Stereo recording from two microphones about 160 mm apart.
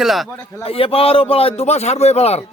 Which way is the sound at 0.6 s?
35° left (ahead or behind).